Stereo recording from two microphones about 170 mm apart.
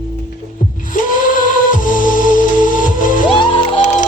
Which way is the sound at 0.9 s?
50° left (ahead or behind).